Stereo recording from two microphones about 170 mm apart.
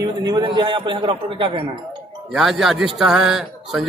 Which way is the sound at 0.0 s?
25° right (ahead or behind).